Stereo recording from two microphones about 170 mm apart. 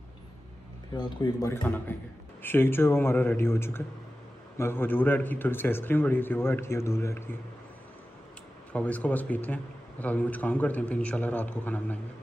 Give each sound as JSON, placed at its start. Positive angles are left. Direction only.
{"t": 0.9, "sound": "speech", "side_deg": 25}
{"t": 1.5, "sound": "speech", "side_deg": 10}
{"t": 8.7, "sound": "speech", "side_deg": 10}